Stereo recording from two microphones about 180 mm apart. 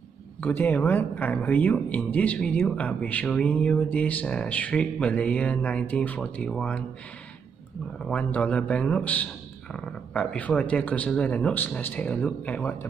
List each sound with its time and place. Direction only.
0.4 s speech: 10° left (ahead or behind)
8.1 s speech: 5° left (ahead or behind)